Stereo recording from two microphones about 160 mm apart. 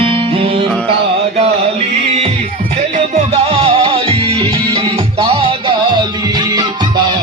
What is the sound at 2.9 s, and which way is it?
Music, 45° right (ahead or behind).